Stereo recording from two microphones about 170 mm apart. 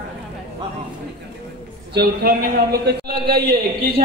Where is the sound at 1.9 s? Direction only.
65° right (ahead or behind).